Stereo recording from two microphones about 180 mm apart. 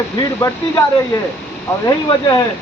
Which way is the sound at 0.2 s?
20° left (ahead or behind).